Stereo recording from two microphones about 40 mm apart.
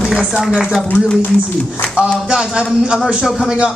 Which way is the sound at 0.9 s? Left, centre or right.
Left.